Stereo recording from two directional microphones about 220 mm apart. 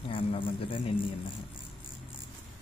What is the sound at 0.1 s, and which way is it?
Speech, 25° left (ahead or behind).